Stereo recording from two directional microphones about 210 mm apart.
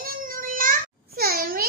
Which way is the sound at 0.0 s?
40° right (ahead or behind).